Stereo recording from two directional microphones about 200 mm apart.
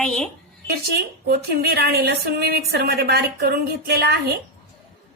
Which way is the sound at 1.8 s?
50° right (ahead or behind).